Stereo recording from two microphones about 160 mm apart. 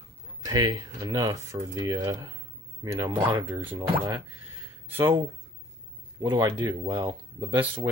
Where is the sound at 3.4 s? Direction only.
15° right (ahead or behind).